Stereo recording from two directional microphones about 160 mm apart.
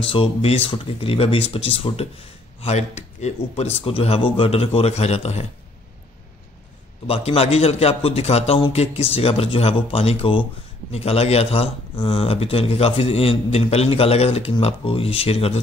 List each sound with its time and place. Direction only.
0.0 s speech: 35° left (ahead or behind)
7.1 s speech: 40° left (ahead or behind)